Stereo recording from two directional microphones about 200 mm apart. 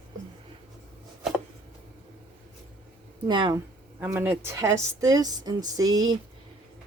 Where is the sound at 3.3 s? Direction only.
20° right (ahead or behind).